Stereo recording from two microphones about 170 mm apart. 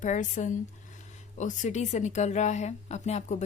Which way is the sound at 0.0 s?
45° left (ahead or behind).